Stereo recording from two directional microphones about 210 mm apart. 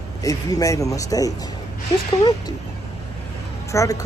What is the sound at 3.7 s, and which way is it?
Speech, 15° left (ahead or behind).